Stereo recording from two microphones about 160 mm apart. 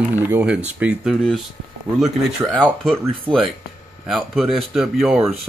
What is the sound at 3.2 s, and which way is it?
Speech, 35° right (ahead or behind).